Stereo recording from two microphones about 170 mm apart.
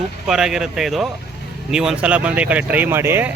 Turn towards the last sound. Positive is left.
turn(degrees=-15)  # may be behind; listen again after turning